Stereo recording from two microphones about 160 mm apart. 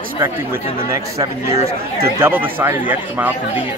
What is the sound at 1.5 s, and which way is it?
Speech, 40° right (ahead or behind).